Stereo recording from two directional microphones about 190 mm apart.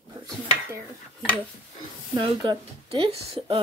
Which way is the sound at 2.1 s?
25° right (ahead or behind).